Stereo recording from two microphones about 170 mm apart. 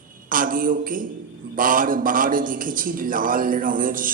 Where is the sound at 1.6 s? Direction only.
55° right (ahead or behind).